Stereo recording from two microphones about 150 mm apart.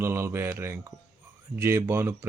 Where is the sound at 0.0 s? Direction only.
15° right (ahead or behind).